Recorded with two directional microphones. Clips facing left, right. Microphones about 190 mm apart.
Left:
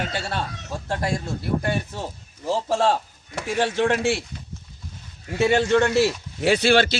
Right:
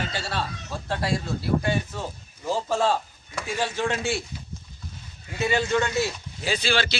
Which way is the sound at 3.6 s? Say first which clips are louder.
Left 6 dB; 65° left (ahead or behind).